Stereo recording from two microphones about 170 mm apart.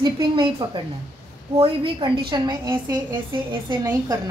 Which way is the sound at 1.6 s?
30° right (ahead or behind).